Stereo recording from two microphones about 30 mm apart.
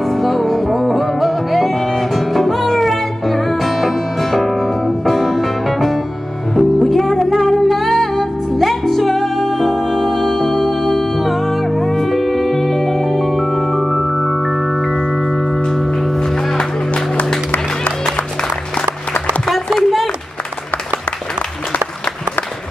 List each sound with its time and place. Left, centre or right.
0.0 s music: centre
16.5 s music: left
19.7 s a sound: centre